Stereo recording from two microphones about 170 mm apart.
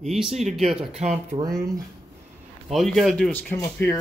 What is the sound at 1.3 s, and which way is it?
Speech, 45° right (ahead or behind).